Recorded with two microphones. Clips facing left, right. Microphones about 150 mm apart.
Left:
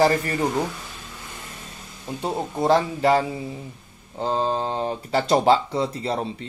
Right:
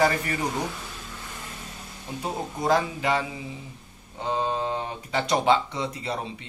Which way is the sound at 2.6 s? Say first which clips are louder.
Left 5 dB; 30° left (ahead or behind).